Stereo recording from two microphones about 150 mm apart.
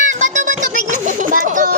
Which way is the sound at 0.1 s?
55° right (ahead or behind).